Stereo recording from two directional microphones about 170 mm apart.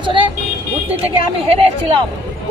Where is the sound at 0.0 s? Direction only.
30° right (ahead or behind).